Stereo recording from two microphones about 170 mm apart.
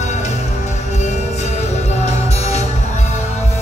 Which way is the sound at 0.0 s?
45° left (ahead or behind).